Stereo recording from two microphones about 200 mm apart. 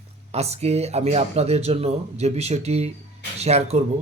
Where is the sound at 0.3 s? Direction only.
30° right (ahead or behind).